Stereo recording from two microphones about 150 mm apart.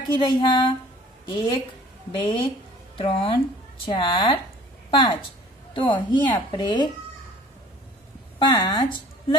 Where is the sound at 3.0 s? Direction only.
40° left (ahead or behind).